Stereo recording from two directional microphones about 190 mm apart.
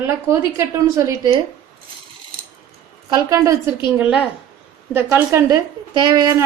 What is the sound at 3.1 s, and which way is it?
Speech, 15° right (ahead or behind).